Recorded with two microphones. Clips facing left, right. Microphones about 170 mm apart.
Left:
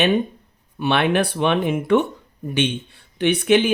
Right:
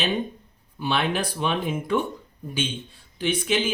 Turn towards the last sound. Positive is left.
turn(degrees=65)  # may be behind; listen again after turning